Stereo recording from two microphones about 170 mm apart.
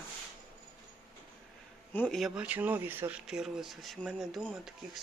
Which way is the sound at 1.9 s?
5° left (ahead or behind).